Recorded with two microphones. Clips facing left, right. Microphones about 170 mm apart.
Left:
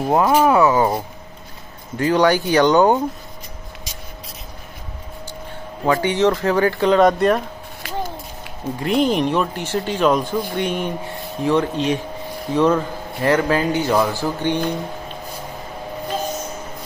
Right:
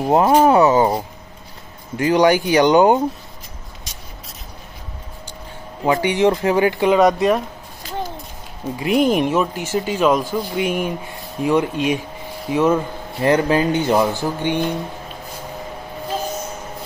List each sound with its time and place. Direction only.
0.1 s speech: 25° right (ahead or behind)
2.0 s speech: 15° right (ahead or behind)
5.9 s speech: 15° right (ahead or behind)
7.0 s speech: centre (ahead or behind)
8.7 s speech: 10° right (ahead or behind)
13.2 s speech: 20° right (ahead or behind)